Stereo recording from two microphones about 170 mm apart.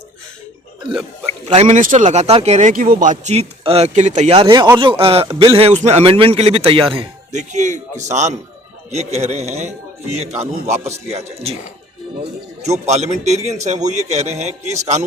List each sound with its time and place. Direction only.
1.5 s a man's voice: 45° right (ahead or behind)
7.5 s a man's voice: 45° right (ahead or behind)